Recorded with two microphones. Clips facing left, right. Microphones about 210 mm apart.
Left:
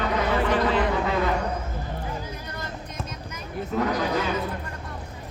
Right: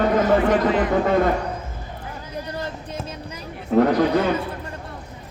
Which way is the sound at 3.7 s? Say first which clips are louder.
Right 9 dB; 55° right (ahead or behind).